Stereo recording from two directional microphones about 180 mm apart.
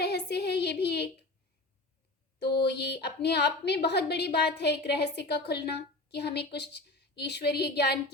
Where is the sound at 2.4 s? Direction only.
65° left (ahead or behind).